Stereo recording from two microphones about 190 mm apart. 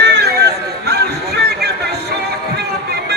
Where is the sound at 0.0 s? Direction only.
65° right (ahead or behind).